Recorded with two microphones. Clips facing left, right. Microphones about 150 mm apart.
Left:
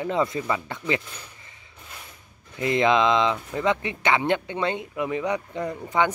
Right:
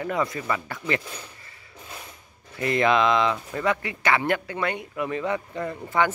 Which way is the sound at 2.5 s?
20° left (ahead or behind).